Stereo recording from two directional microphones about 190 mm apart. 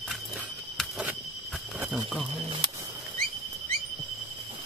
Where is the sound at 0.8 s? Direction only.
Centre (ahead or behind).